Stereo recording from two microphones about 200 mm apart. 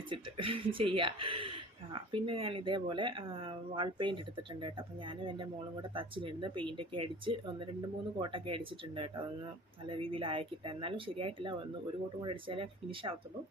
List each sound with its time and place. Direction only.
0.1 s speech: 25° right (ahead or behind)